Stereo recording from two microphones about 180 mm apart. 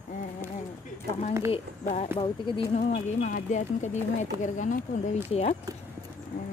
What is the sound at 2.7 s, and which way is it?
Speech, 45° left (ahead or behind).